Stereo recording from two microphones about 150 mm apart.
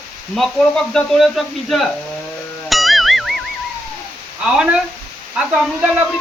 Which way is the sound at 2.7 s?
Centre (ahead or behind).